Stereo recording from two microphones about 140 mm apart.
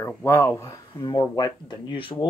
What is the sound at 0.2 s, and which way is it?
Speech, 20° left (ahead or behind).